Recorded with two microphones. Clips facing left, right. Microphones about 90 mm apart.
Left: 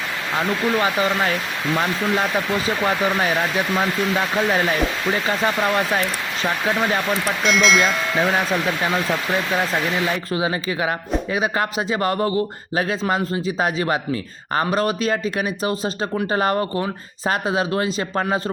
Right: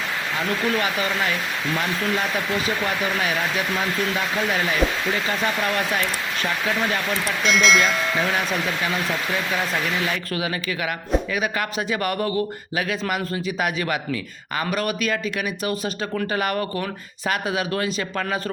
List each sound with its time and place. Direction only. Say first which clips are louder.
2.6 s speech: left 4 dB; 35° left (ahead or behind)
5.6 s a man's voice: left 3 dB; 30° left (ahead or behind)
7.4 s speech: left 1 dB; centre (ahead or behind)
10.3 s a man's voice: left 4 dB; 25° left (ahead or behind)